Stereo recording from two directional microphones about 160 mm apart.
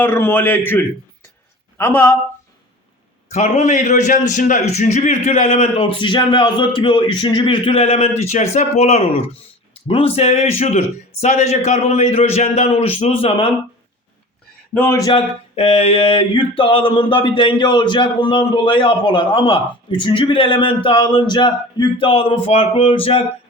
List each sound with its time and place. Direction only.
0.0 s a man's voice: 15° left (ahead or behind)
3.2 s a sound: 45° left (ahead or behind)
10.6 s a man's voice: 40° left (ahead or behind)
14.7 s speech: 10° left (ahead or behind)
14.9 s speech: 25° left (ahead or behind)
15.5 s a sound: 40° left (ahead or behind)